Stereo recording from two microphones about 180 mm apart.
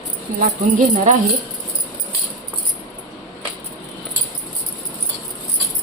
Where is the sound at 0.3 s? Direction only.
45° right (ahead or behind).